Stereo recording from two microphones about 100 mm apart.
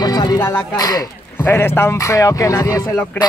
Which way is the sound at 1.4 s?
20° left (ahead or behind).